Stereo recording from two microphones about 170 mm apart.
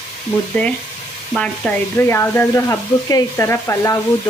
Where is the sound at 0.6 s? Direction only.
5° left (ahead or behind).